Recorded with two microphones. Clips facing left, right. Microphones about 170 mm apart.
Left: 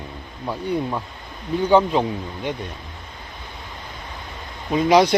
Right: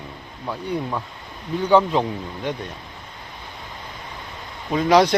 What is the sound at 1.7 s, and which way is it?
Speech, 5° left (ahead or behind).